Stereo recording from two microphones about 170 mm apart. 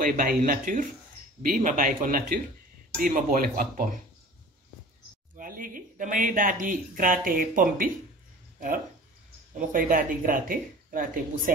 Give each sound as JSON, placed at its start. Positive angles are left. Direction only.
{"t": 0.0, "sound": "speech", "side_deg": -55}
{"t": 5.4, "sound": "speech", "side_deg": -55}